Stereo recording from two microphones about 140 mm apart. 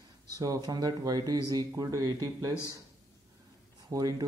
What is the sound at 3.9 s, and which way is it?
Speech, 25° right (ahead or behind).